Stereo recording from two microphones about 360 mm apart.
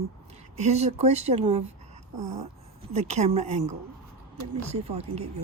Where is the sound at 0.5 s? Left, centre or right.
Centre.